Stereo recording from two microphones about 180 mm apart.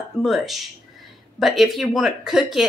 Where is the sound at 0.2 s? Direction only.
Centre (ahead or behind).